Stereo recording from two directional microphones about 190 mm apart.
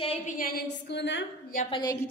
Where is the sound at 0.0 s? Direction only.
30° left (ahead or behind).